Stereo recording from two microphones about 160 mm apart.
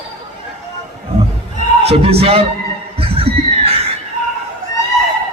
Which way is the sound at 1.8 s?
40° right (ahead or behind).